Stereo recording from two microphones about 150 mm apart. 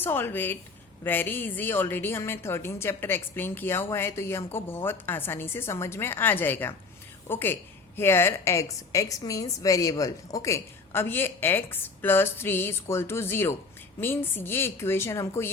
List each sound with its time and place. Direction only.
0.0 s a woman's voice: 15° left (ahead or behind)